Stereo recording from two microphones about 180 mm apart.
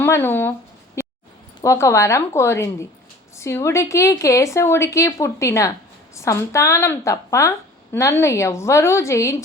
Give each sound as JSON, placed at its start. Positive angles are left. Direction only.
{"t": 0.0, "sound": "a woman's voice", "side_deg": 10}
{"t": 1.0, "sound": "a sound", "side_deg": 15}
{"t": 1.6, "sound": "a woman's voice", "side_deg": 15}